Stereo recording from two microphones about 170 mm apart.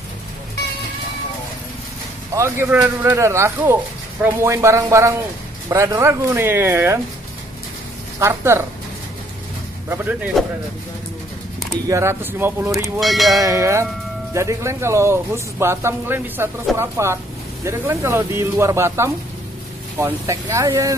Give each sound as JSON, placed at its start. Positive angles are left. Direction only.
{"t": 2.3, "sound": "a man's voice", "side_deg": -15}
{"t": 8.2, "sound": "a man's voice", "side_deg": -15}
{"t": 9.8, "sound": "a man's voice", "side_deg": -10}
{"t": 11.9, "sound": "a man's voice", "side_deg": -15}
{"t": 13.0, "sound": "speech", "side_deg": 0}
{"t": 13.3, "sound": "a man's voice", "side_deg": -20}